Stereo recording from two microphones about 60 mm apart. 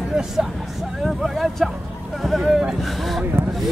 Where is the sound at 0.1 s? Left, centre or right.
Centre.